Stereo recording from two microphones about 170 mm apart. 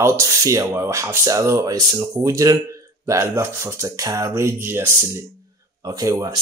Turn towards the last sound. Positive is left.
turn(degrees=-20)  # may be behind; listen again after turning